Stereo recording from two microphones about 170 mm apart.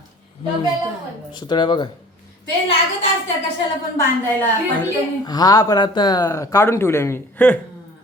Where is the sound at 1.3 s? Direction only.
25° left (ahead or behind).